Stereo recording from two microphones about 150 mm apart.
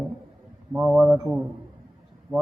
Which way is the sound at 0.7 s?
10° right (ahead or behind).